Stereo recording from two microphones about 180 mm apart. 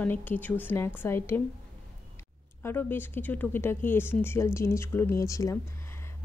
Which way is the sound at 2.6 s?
10° left (ahead or behind).